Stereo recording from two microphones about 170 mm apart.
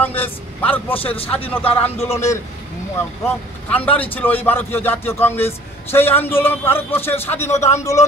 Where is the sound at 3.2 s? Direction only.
10° left (ahead or behind).